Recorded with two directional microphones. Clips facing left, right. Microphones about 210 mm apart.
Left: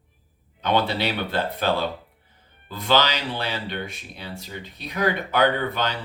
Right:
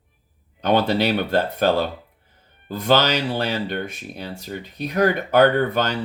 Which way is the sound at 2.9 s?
45° right (ahead or behind).